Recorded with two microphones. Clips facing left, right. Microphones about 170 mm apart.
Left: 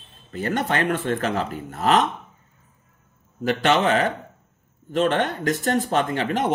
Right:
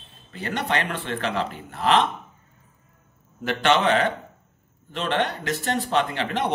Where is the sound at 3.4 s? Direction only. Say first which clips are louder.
Left 1 dB; 40° left (ahead or behind).